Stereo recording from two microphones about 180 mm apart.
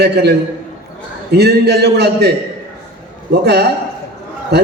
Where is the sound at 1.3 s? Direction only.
65° right (ahead or behind).